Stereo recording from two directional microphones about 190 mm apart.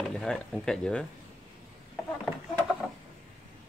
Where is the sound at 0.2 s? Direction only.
5° left (ahead or behind).